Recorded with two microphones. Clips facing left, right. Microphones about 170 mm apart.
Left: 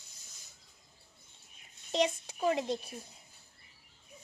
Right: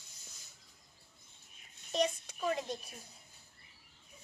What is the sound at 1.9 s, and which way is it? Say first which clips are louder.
Speech: left 3 dB; 25° left (ahead or behind).